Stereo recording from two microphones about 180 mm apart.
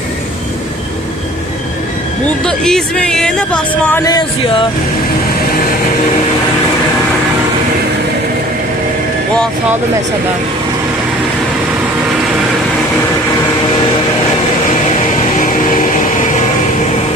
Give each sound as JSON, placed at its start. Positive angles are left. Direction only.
{"t": 2.4, "sound": "speech", "side_deg": 5}
{"t": 4.0, "sound": "music", "side_deg": 25}
{"t": 15.2, "sound": "vehicle", "side_deg": 45}